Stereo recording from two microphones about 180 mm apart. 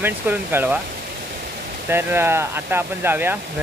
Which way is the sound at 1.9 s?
10° right (ahead or behind).